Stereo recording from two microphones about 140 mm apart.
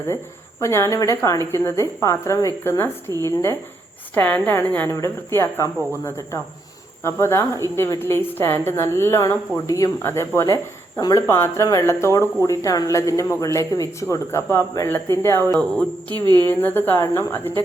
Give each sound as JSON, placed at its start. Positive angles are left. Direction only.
{"t": 0.6, "sound": "a woman's voice", "side_deg": 20}
{"t": 16.2, "sound": "a woman's voice", "side_deg": -30}
{"t": 16.5, "sound": "a woman's voice", "side_deg": 15}